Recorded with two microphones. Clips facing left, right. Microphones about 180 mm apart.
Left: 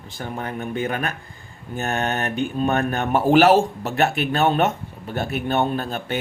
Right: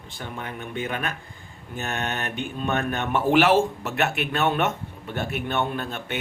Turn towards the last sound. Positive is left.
turn(degrees=35)  # may be behind; listen again after turning